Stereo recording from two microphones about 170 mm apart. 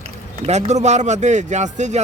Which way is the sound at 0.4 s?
40° right (ahead or behind).